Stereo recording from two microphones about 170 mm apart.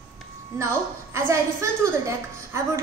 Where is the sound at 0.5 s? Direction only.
15° right (ahead or behind).